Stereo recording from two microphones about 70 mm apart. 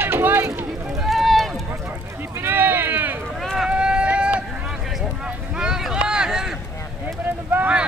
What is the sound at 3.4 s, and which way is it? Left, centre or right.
Run, centre.